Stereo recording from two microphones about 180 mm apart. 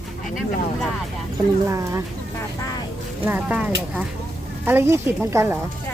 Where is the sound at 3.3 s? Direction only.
10° right (ahead or behind).